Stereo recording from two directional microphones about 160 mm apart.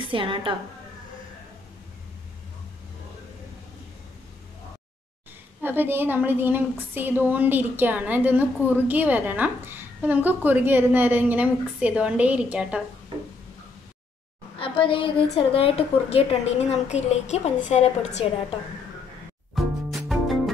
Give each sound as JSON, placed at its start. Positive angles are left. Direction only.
{"t": 0.1, "sound": "a woman's voice", "side_deg": -30}
{"t": 5.6, "sound": "a woman's voice", "side_deg": -10}
{"t": 14.6, "sound": "a woman's voice", "side_deg": 35}
{"t": 19.5, "sound": "music", "side_deg": 0}